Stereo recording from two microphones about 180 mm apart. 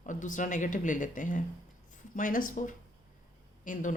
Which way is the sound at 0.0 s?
45° left (ahead or behind).